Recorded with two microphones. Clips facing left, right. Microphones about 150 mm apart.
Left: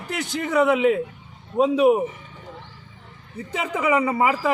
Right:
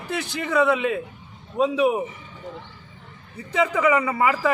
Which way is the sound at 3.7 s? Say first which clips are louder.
Left 1 dB; 15° left (ahead or behind).